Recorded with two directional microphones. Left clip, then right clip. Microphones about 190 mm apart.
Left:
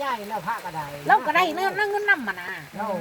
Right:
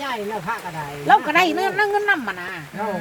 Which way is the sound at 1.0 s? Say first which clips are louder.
Right 4 dB; 10° left (ahead or behind).